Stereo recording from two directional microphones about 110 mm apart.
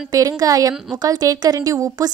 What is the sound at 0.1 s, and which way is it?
A woman's voice, 35° right (ahead or behind).